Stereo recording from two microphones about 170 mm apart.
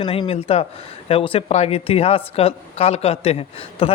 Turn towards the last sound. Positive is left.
turn(degrees=35)  # may be behind; listen again after turning